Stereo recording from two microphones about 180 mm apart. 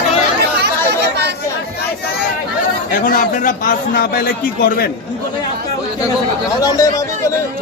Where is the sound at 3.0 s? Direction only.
50° left (ahead or behind).